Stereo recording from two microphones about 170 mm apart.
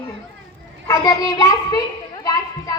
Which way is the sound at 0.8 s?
20° left (ahead or behind).